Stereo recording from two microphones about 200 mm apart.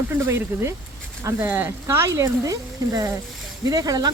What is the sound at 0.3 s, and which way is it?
Speech, 15° right (ahead or behind).